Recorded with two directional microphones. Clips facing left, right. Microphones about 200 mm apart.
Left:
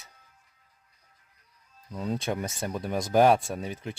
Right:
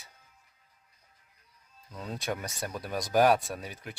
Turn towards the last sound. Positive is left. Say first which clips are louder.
# left 5 dB
turn(degrees=25)  # may be behind; listen again after turning